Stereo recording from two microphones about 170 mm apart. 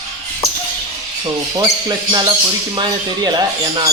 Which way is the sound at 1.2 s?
25° right (ahead or behind).